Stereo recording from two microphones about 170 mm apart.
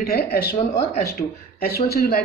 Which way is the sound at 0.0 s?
65° left (ahead or behind).